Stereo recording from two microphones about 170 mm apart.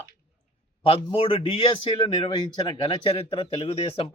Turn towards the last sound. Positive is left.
turn(degrees=35)  # may be behind; listen again after turning